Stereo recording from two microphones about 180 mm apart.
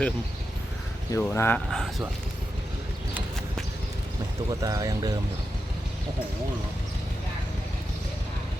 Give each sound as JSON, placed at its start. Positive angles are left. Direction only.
{"t": 1.1, "sound": "speech", "side_deg": 15}
{"t": 4.6, "sound": "speech", "side_deg": -20}